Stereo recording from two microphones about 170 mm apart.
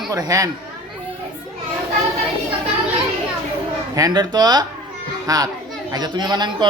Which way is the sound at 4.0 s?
20° right (ahead or behind).